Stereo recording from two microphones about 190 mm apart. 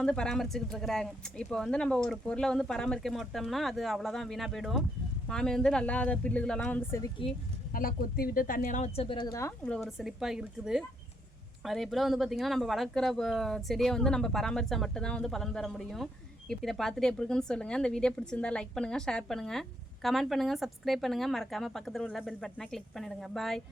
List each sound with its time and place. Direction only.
0.0 s a woman's voice: 5° left (ahead or behind)
7.7 s speech: 50° left (ahead or behind); by 9.5 s 20° left (ahead or behind)
9.6 s a woman's voice: 5° left (ahead or behind)